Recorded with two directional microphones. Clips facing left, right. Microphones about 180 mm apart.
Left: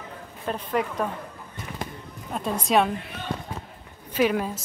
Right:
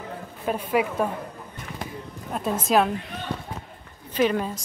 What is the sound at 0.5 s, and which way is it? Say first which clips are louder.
Speech: right 3 dB; 10° right (ahead or behind).